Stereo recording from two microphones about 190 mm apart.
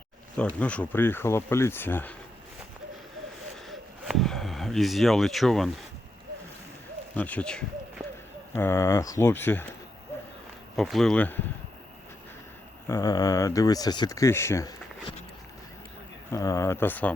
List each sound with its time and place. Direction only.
0.3 s speech: 5° left (ahead or behind)
3.7 s speech: centre (ahead or behind)
7.2 s speech: 5° left (ahead or behind)
10.8 s speech: centre (ahead or behind)
12.9 s speech: 20° left (ahead or behind)
16.3 s speech: 15° left (ahead or behind)